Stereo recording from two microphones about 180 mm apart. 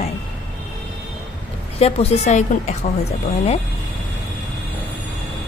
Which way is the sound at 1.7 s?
35° left (ahead or behind).